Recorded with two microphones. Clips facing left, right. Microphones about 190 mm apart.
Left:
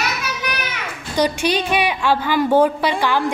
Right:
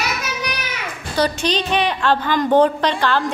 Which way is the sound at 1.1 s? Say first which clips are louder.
Left 1 dB; 10° left (ahead or behind).